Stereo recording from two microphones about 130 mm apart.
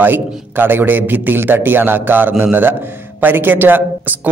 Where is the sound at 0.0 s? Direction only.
15° right (ahead or behind).